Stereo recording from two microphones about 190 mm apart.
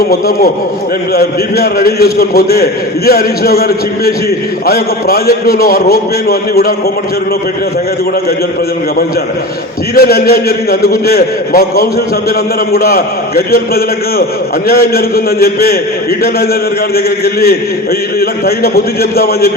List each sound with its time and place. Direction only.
0.0 s a man's voice: 50° left (ahead or behind)
9.9 s a man's voice: 55° left (ahead or behind)
16.9 s a man's voice: 55° left (ahead or behind)